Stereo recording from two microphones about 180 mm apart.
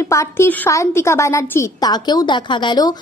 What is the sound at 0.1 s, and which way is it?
A woman's voice, 15° left (ahead or behind).